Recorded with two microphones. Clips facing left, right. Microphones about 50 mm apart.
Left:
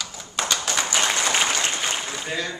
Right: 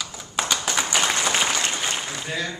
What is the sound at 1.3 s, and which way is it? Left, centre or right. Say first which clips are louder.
Applause: even; centre.